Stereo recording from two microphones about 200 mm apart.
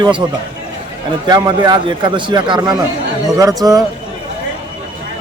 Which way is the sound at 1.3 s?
20° right (ahead or behind).